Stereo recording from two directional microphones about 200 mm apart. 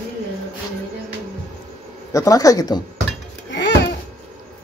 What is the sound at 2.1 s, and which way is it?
Speech, 15° left (ahead or behind).